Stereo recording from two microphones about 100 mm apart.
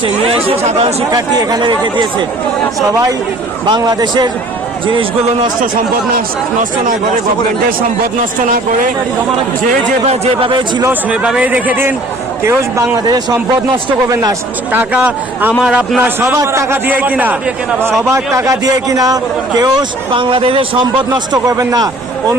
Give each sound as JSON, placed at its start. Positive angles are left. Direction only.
{"t": 0.0, "sound": "speech", "side_deg": -70}
{"t": 1.1, "sound": "speech", "side_deg": -40}
{"t": 3.7, "sound": "speech", "side_deg": -45}
{"t": 11.1, "sound": "a man's voice", "side_deg": -10}
{"t": 14.7, "sound": "speech", "side_deg": -15}
{"t": 16.0, "sound": "a man's voice", "side_deg": -25}
{"t": 18.1, "sound": "a man's voice", "side_deg": -35}
{"t": 20.1, "sound": "a man's voice", "side_deg": -65}
{"t": 21.4, "sound": "a man's voice", "side_deg": -40}